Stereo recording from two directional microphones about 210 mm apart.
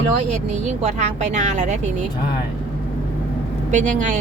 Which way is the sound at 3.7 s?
35° right (ahead or behind).